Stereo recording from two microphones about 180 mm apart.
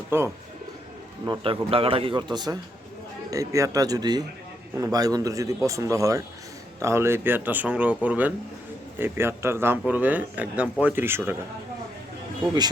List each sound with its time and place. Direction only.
0.1 s speech: 15° right (ahead or behind)
1.2 s speech: 25° right (ahead or behind)